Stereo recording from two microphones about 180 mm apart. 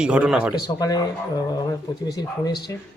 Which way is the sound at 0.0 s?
5° right (ahead or behind).